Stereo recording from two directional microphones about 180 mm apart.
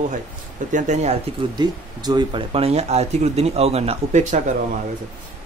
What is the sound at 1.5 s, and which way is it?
Speech, 25° right (ahead or behind).